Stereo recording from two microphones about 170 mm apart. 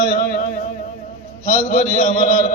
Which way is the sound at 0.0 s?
60° left (ahead or behind).